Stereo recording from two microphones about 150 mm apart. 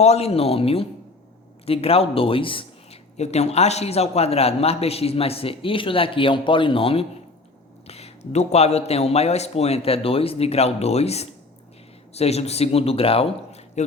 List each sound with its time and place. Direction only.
0.0 s speech: 45° left (ahead or behind)